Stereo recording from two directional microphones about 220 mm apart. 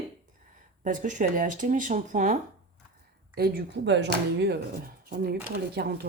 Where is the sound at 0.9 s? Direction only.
35° right (ahead or behind).